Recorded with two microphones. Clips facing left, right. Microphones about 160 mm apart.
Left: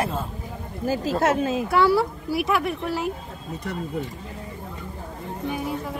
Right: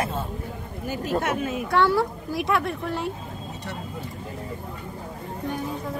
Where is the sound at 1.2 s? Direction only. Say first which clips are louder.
Left 5 dB; 25° left (ahead or behind).